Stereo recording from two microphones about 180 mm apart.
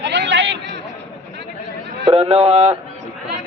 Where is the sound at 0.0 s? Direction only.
75° right (ahead or behind).